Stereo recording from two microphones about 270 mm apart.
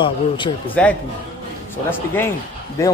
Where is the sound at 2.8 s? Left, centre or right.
Centre.